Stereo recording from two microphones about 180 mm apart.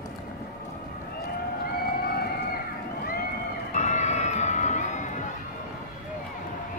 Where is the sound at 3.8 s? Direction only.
40° left (ahead or behind).